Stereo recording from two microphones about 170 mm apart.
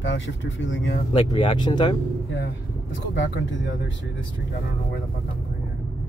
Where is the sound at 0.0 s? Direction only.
90° left.